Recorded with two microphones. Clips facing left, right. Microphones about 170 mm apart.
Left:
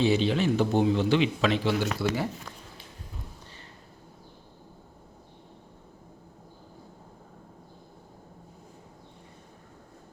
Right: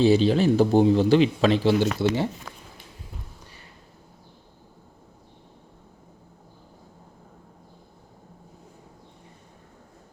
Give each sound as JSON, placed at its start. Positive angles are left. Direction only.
{"t": 0.0, "sound": "speech", "side_deg": -35}